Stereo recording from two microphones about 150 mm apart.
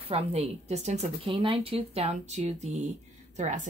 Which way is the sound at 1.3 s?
35° right (ahead or behind).